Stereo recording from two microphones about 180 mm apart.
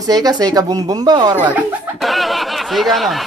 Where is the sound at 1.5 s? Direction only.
Centre (ahead or behind).